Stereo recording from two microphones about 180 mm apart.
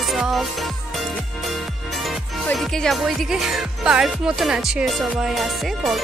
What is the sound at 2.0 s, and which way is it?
Speech, centre (ahead or behind).